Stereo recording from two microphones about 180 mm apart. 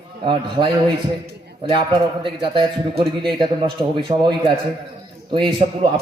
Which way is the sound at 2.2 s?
30° right (ahead or behind).